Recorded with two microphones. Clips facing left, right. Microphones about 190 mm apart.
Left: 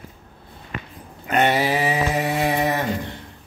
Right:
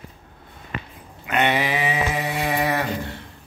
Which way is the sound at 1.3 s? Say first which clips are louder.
Left 2 dB; 40° left (ahead or behind).